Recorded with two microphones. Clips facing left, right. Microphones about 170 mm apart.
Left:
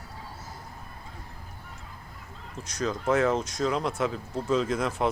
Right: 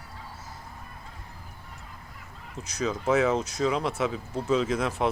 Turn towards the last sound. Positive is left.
turn(degrees=0)  # may be behind; listen again after turning